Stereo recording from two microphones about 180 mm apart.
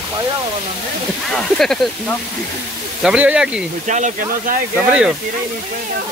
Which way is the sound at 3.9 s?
45° right (ahead or behind).